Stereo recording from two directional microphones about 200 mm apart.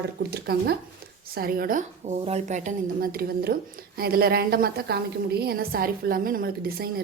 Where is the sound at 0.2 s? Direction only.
50° right (ahead or behind).